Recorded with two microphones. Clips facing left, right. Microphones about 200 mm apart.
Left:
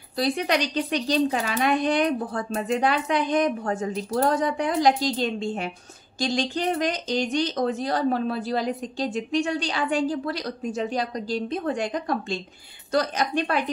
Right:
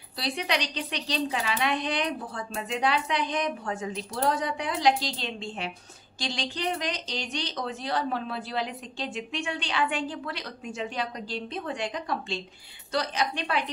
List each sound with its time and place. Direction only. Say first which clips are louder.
0.2 s speech: left 6 dB; 45° left (ahead or behind)